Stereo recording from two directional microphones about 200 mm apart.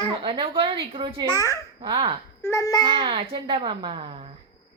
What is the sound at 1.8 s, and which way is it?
Speech, 25° right (ahead or behind).